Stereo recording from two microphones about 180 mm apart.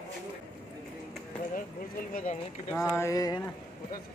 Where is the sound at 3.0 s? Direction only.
20° left (ahead or behind).